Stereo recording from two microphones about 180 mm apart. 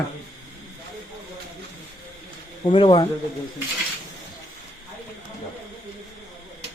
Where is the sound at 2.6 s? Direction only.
30° left (ahead or behind).